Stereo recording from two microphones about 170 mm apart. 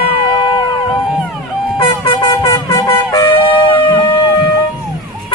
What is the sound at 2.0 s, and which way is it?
Shofar, 25° left (ahead or behind).